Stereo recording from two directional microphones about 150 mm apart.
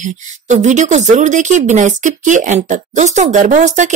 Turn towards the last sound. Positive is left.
turn(degrees=-55)  # may be behind; listen again after turning